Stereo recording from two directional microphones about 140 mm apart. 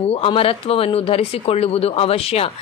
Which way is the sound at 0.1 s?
40° left (ahead or behind).